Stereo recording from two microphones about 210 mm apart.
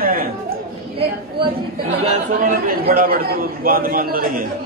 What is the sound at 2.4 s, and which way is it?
A man's voice, 45° right (ahead or behind).